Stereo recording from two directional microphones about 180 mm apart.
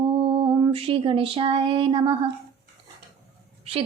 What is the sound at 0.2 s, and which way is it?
Lullaby, 30° right (ahead or behind).